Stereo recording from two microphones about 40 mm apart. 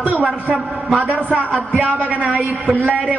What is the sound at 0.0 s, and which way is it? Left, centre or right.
Speech, right.